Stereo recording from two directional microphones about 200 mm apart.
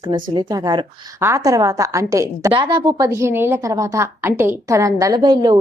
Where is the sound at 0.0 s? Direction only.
20° right (ahead or behind).